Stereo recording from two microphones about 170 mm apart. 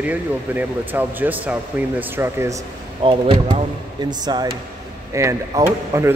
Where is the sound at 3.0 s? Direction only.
30° right (ahead or behind).